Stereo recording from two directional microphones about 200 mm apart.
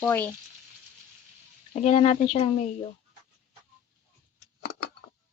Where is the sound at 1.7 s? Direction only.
35° left (ahead or behind).